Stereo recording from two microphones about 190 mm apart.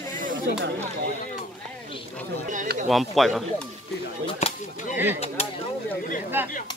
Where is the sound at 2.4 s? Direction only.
40° right (ahead or behind).